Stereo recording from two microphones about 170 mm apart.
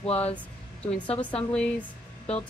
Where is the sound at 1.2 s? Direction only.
5° left (ahead or behind).